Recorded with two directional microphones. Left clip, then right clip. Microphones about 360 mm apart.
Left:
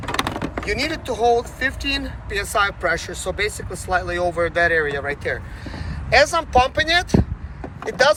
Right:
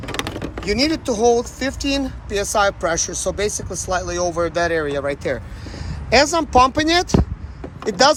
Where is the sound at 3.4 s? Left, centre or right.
Centre.